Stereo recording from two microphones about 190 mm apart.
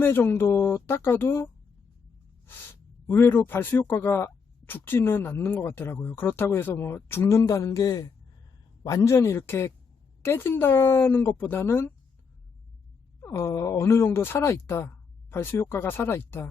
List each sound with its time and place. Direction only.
0.0 s speech: 10° left (ahead or behind)
3.1 s speech: 10° left (ahead or behind)
13.1 s speech: 10° left (ahead or behind)